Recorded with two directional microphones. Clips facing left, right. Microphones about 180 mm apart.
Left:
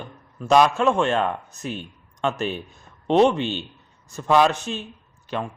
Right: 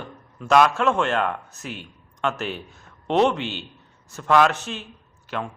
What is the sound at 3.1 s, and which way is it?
A man's voice, 15° left (ahead or behind).